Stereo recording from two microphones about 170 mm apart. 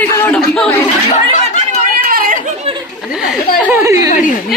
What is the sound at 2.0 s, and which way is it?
Chatter, 60° right (ahead or behind).